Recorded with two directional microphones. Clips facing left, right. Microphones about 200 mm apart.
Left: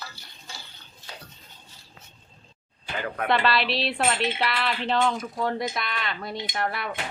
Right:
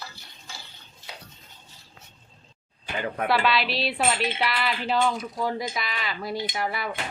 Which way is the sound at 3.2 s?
5° right (ahead or behind).